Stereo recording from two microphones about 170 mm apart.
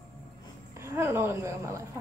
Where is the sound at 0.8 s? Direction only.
15° right (ahead or behind).